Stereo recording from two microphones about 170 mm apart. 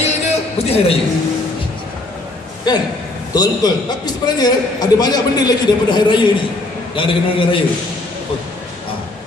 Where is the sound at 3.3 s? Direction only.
25° left (ahead or behind).